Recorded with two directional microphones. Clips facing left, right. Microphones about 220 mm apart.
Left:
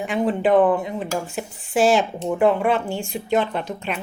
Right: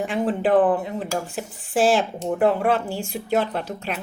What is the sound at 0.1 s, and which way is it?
Speech, 5° right (ahead or behind).